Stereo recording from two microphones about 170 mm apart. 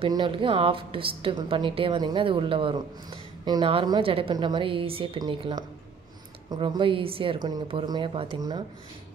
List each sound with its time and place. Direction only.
0.0 s a woman's voice: 30° right (ahead or behind)